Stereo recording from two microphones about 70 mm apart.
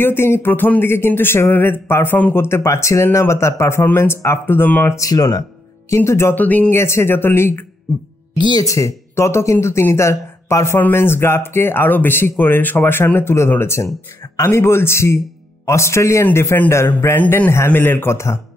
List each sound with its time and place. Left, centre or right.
0.0 s speech: left
4.9 s speech: left
5.9 s speech: left
6.3 s speech: left
6.7 s speech: left
8.4 s speech: left
8.6 s speech: left
17.2 s speech: left